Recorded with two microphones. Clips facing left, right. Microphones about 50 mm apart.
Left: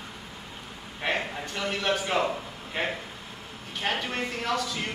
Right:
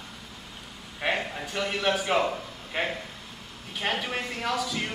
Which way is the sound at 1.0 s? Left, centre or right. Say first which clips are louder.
Right 1 dB; centre.